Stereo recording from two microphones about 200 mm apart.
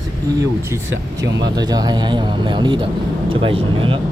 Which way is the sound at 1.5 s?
20° right (ahead or behind).